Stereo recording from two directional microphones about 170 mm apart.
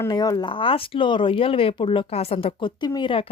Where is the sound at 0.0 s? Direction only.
20° left (ahead or behind).